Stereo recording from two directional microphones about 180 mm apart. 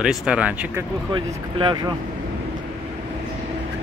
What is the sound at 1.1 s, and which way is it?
Speech, 25° right (ahead or behind).